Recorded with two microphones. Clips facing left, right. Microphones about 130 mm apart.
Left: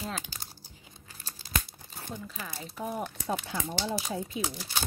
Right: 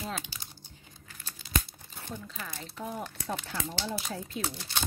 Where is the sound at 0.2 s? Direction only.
45° left (ahead or behind).